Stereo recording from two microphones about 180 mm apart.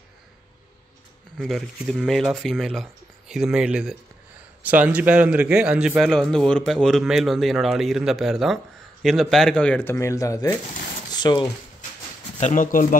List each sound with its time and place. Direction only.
1.4 s a man's voice: centre (ahead or behind); by 11.4 s 25° left (ahead or behind)
12.4 s speech: 45° left (ahead or behind)